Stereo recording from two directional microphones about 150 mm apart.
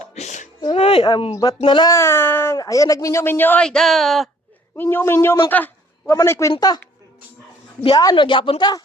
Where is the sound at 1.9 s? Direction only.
15° left (ahead or behind); by 4.3 s centre (ahead or behind).